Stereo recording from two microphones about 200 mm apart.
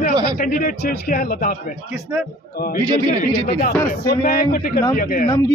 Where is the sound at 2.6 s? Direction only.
45° left (ahead or behind).